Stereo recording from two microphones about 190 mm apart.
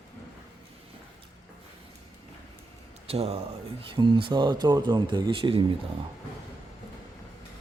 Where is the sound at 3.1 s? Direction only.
30° right (ahead or behind).